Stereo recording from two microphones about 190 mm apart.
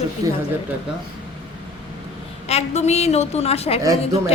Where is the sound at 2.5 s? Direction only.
35° left (ahead or behind).